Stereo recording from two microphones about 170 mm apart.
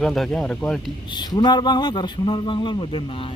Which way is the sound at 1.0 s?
25° left (ahead or behind).